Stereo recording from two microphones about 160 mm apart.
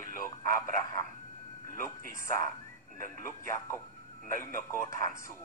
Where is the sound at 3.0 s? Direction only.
15° left (ahead or behind).